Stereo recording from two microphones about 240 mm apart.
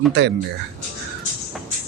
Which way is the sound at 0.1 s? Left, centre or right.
Right.